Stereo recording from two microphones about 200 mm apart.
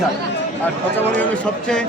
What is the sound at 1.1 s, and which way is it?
Speech, 5° left (ahead or behind).